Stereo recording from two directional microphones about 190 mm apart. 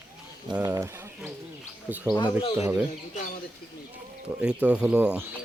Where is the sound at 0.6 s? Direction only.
15° right (ahead or behind).